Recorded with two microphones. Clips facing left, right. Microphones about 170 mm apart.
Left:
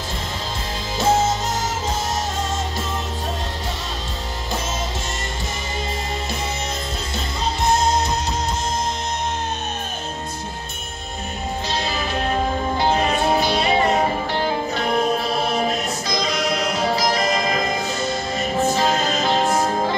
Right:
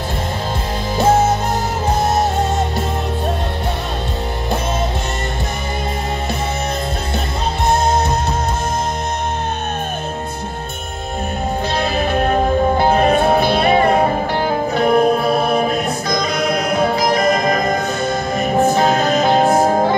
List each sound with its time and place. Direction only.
0.9 s music: 60° right (ahead or behind)
7.6 s music: 60° right (ahead or behind)
11.7 s music: 60° right (ahead or behind)